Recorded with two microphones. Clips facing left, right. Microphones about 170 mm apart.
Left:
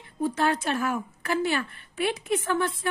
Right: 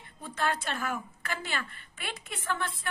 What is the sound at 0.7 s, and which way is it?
A woman's voice, 40° left (ahead or behind).